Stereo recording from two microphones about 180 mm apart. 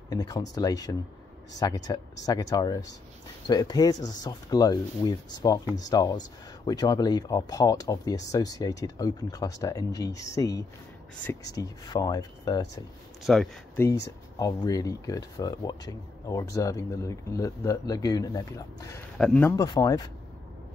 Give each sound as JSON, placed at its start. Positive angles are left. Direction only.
{"t": 0.1, "sound": "speech", "side_deg": 20}
{"t": 13.2, "sound": "speech", "side_deg": 0}
{"t": 14.4, "sound": "speech", "side_deg": 20}
{"t": 19.1, "sound": "speech", "side_deg": 5}
{"t": 19.5, "sound": "speech", "side_deg": 20}